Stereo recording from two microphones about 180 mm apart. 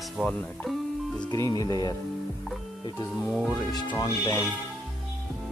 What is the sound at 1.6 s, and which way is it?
Speech, 20° left (ahead or behind).